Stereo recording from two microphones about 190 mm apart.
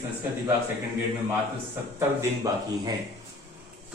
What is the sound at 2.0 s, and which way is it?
Speech, 15° right (ahead or behind).